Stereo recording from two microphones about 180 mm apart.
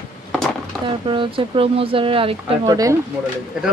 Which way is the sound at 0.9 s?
30° right (ahead or behind).